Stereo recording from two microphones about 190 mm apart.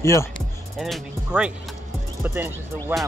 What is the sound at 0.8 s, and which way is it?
Speech, centre (ahead or behind).